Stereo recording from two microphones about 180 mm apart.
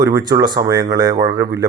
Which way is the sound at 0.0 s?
25° right (ahead or behind).